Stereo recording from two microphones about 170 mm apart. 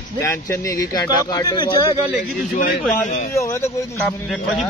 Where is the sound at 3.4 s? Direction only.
15° left (ahead or behind).